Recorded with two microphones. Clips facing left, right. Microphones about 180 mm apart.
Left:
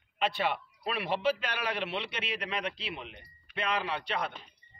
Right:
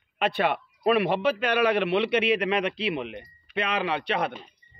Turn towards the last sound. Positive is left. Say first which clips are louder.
# right 7 dB
turn(degrees=-65)  # may be behind; listen again after turning